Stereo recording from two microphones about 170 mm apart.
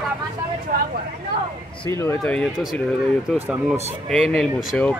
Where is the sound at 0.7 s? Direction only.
60° right (ahead or behind).